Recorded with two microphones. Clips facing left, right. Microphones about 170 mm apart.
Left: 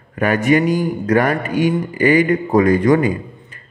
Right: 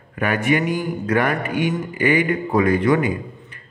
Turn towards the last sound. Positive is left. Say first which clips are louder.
# left 4 dB
turn(degrees=40)  # may be behind; listen again after turning